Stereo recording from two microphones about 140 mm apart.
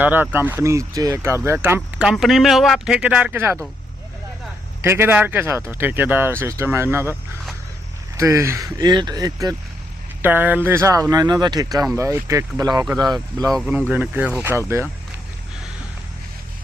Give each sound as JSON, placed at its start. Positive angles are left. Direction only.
{"t": 0.0, "sound": "speech", "side_deg": -10}
{"t": 4.8, "sound": "speech", "side_deg": -15}
{"t": 8.1, "sound": "speech", "side_deg": -20}
{"t": 10.2, "sound": "speech", "side_deg": -15}
{"t": 13.5, "sound": "speech", "side_deg": -5}